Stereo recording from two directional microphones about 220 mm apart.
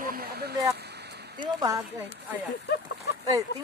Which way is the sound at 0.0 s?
45° right (ahead or behind).